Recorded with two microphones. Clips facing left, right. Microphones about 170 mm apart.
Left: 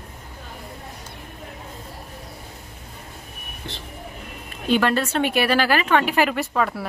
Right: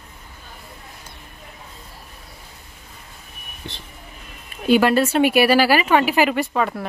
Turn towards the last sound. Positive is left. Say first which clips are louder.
# right 2 dB
turn(degrees=0)  # may be behind; listen again after turning